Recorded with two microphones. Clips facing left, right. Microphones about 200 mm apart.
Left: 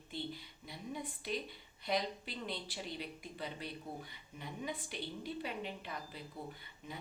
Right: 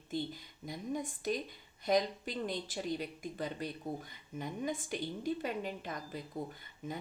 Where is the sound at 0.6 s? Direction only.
45° right (ahead or behind).